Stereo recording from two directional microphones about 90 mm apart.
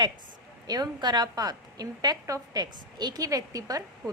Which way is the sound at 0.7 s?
50° right (ahead or behind).